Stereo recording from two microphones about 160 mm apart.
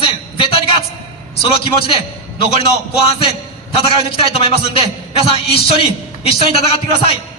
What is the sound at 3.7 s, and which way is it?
A man's voice, 35° left (ahead or behind).